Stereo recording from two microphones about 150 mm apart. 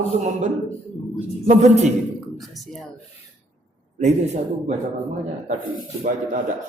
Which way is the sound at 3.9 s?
50° right (ahead or behind).